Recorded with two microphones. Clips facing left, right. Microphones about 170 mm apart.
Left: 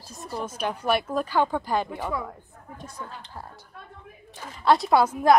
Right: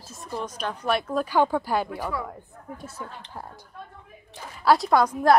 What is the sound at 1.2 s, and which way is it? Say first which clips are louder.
Speech: right 2 dB; 10° right (ahead or behind).